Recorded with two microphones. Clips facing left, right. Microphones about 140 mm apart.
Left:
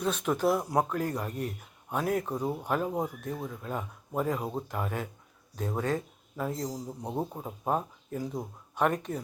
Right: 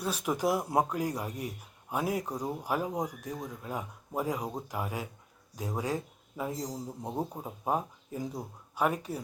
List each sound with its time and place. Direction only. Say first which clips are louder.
0.0 s speech: left 3 dB; 10° right (ahead or behind)